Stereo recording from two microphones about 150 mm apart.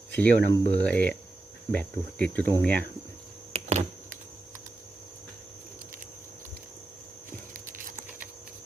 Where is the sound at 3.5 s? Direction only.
45° right (ahead or behind).